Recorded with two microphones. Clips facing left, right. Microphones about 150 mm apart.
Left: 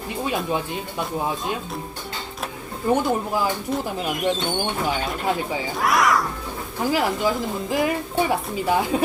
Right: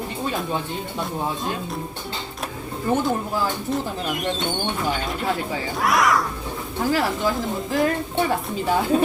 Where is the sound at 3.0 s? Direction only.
10° left (ahead or behind).